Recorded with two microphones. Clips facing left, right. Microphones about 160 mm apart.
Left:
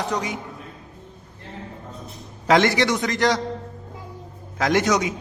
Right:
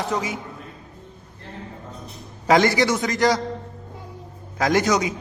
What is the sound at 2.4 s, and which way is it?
Speech, centre (ahead or behind).